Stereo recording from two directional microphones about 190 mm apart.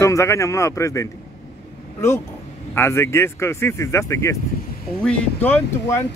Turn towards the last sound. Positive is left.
turn(degrees=10)  # may be behind; listen again after turning